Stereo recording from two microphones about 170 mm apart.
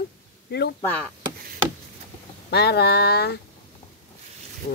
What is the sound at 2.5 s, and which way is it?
Speech, 75° left (ahead or behind).